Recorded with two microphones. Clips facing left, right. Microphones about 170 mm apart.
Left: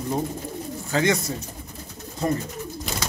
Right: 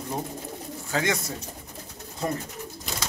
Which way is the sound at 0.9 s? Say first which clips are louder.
Left 5 dB; 5° right (ahead or behind).